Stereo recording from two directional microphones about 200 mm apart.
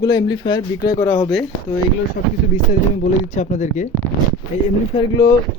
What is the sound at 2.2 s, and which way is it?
Speech, 45° left (ahead or behind).